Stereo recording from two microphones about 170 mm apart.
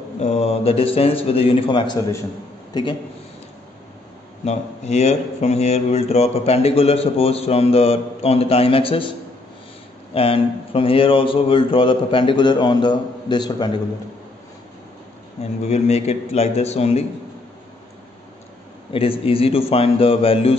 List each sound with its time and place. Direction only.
0.2 s a man's voice: 40° left (ahead or behind)
4.5 s speech: 40° left (ahead or behind)
10.1 s speech: 35° left (ahead or behind)
15.6 s speech: 40° left (ahead or behind)
18.9 s speech: 35° left (ahead or behind)